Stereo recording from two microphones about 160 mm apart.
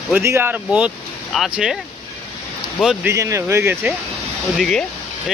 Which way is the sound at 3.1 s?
20° right (ahead or behind).